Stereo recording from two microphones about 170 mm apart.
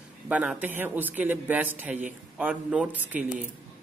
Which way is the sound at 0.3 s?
10° right (ahead or behind).